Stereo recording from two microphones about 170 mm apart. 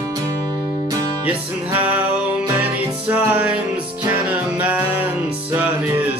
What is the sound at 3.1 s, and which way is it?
Music, 10° right (ahead or behind).